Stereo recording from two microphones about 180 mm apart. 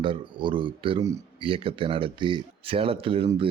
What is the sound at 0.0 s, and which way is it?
Speech, 30° right (ahead or behind).